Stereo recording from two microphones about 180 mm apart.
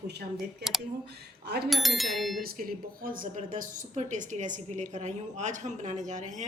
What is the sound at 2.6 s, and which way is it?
A woman's voice, 50° right (ahead or behind).